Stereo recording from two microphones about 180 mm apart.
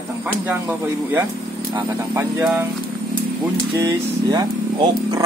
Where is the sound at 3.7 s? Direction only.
20° right (ahead or behind).